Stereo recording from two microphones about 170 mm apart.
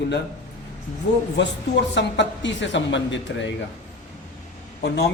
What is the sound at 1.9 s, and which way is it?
Speech, 90° left.